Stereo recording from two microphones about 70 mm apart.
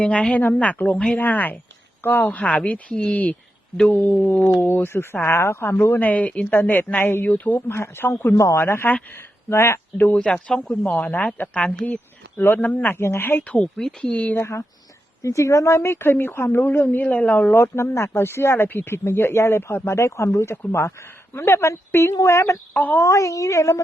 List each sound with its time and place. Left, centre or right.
0.0 s speech: centre
2.4 s speech: centre; by 6.0 s left
6.0 s speech: left
7.7 s speech: left
8.5 s speech: left
10.2 s speech: centre; by 13.0 s left
13.0 s speech: left
13.5 s speech: centre
14.3 s speech: left
17.6 s a woman's voice: left
22.7 s speech: left
23.0 s a woman's voice: left